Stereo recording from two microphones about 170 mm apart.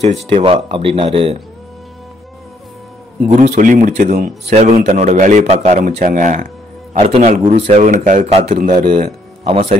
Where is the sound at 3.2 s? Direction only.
45° right (ahead or behind).